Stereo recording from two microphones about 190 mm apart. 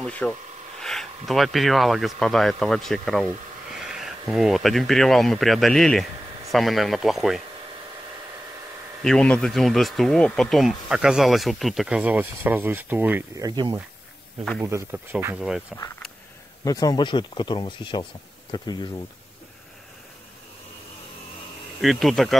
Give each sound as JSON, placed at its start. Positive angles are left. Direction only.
{"t": 0.0, "sound": "speech", "side_deg": 5}
{"t": 9.0, "sound": "speech", "side_deg": 5}
{"t": 16.6, "sound": "speech", "side_deg": 20}
{"t": 21.8, "sound": "speech", "side_deg": 0}